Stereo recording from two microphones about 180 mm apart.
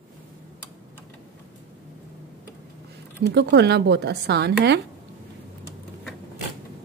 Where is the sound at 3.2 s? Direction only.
70° right (ahead or behind).